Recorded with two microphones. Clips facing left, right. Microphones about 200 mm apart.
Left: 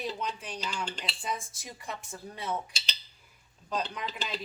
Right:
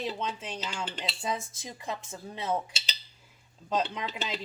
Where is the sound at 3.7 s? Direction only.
25° right (ahead or behind).